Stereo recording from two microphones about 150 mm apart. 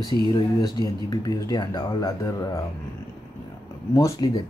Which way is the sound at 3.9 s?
25° left (ahead or behind).